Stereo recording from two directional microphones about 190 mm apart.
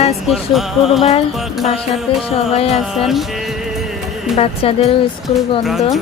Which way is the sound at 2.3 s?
30° left (ahead or behind).